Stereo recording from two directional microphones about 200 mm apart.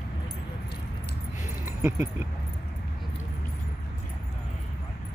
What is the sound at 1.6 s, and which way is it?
Speech, 10° right (ahead or behind).